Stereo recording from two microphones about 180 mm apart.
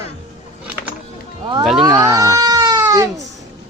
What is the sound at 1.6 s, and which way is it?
Speech, 5° right (ahead or behind).